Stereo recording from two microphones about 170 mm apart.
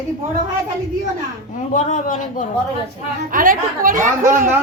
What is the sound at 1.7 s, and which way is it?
Speech, 50° left (ahead or behind).